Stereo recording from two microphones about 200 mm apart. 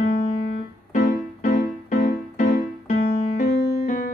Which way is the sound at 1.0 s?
50° left (ahead or behind).